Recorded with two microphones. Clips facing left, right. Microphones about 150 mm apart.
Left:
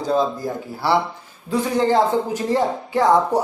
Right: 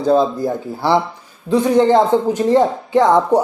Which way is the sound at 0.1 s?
25° right (ahead or behind).